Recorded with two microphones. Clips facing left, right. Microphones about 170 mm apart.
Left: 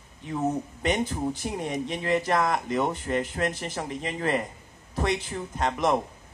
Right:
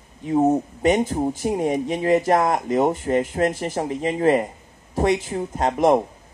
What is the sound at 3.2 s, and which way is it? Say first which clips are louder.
A man's voice: right 7 dB; 45° right (ahead or behind).